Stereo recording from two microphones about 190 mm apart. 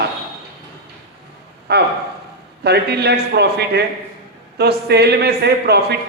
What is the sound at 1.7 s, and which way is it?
Speech, 60° right (ahead or behind).